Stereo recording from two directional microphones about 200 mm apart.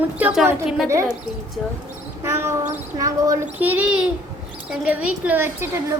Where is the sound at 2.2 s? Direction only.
15° right (ahead or behind).